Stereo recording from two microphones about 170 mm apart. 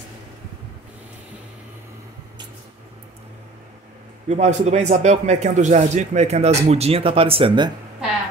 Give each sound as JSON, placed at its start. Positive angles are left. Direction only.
{"t": 4.3, "sound": "speech", "side_deg": -40}